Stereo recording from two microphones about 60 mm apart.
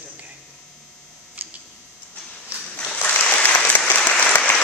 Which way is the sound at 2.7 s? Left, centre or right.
Centre.